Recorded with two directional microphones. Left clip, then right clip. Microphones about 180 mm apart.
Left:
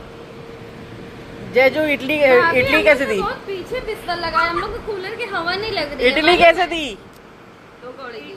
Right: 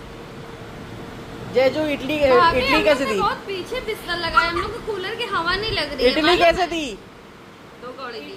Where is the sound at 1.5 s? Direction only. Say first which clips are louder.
Left 4 dB; 15° left (ahead or behind).